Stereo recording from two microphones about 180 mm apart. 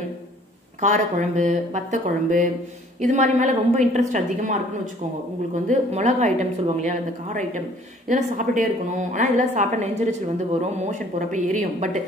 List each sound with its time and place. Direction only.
0.7 s a woman's voice: 40° right (ahead or behind)